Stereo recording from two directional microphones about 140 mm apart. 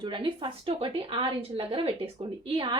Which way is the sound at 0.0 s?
35° right (ahead or behind).